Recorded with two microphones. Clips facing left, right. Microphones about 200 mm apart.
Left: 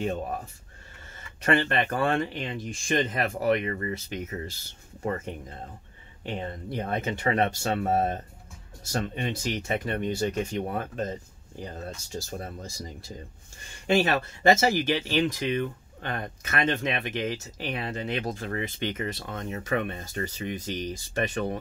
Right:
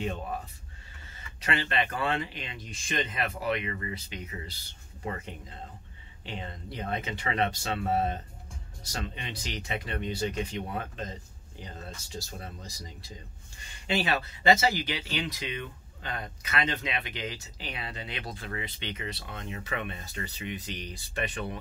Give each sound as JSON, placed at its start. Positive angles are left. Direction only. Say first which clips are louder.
{"t": 1.4, "sound": "speech", "louder": "left 6 dB", "side_deg": 50}